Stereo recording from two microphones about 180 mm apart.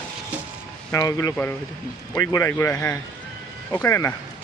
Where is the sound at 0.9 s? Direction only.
20° left (ahead or behind).